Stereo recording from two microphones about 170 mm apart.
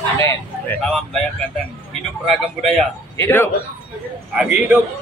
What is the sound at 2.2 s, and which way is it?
Speech, centre (ahead or behind).